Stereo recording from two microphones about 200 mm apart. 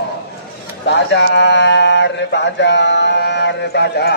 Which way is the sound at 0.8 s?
60° left (ahead or behind).